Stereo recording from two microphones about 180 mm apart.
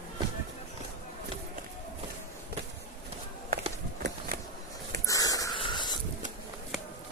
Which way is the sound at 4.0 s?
70° right (ahead or behind).